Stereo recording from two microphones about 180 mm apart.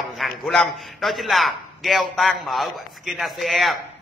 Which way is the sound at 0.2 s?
Centre (ahead or behind).